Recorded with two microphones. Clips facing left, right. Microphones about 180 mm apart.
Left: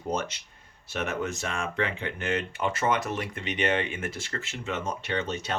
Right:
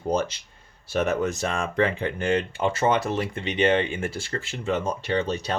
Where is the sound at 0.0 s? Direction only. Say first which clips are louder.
Right 6 dB; 30° right (ahead or behind).